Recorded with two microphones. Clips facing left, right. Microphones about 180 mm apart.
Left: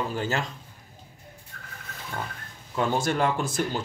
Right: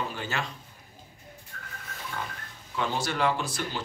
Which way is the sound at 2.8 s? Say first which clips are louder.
Left 4 dB; 50° left (ahead or behind).